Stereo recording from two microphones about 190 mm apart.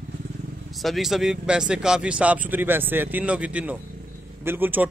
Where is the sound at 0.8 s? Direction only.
Centre (ahead or behind).